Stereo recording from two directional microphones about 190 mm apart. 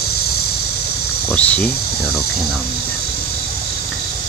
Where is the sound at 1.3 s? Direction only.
5° left (ahead or behind).